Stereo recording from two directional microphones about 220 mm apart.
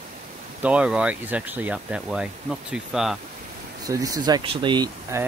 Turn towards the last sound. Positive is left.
turn(degrees=-15)  # may be behind; listen again after turning